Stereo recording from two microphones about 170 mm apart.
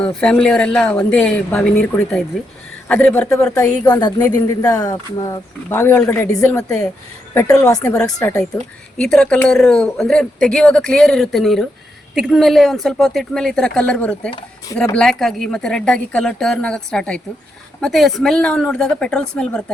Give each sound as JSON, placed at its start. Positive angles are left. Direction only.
{"t": 0.0, "sound": "speech", "side_deg": 5}
{"t": 3.8, "sound": "speech", "side_deg": 20}
{"t": 6.7, "sound": "speech", "side_deg": 5}
{"t": 7.7, "sound": "speech", "side_deg": 20}
{"t": 7.9, "sound": "speech", "side_deg": 5}